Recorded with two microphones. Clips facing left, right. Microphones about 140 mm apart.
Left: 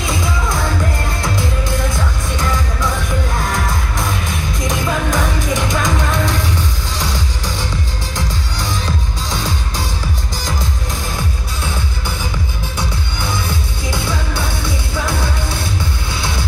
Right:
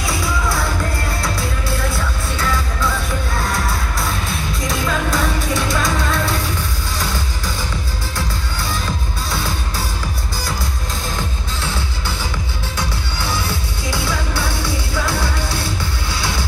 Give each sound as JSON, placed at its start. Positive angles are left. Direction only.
{"t": 0.0, "sound": "music", "side_deg": 20}
{"t": 1.9, "sound": "music", "side_deg": 15}
{"t": 9.3, "sound": "music", "side_deg": 15}
{"t": 13.2, "sound": "music", "side_deg": 20}